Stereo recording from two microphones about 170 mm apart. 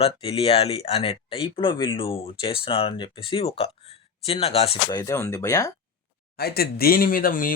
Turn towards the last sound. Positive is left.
turn(degrees=55)  # may be behind; listen again after turning